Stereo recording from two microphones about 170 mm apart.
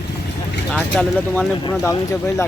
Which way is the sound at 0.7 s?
5° left (ahead or behind).